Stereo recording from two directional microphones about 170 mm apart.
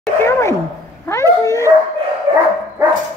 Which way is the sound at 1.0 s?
15° left (ahead or behind).